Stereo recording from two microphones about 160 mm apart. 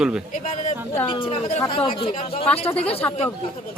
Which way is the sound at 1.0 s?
35° left (ahead or behind).